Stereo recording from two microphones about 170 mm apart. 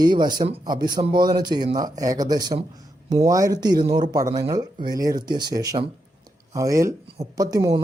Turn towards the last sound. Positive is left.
turn(degrees=-20)  # may be behind; listen again after turning